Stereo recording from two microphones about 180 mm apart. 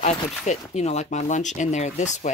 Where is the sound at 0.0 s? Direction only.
40° left (ahead or behind).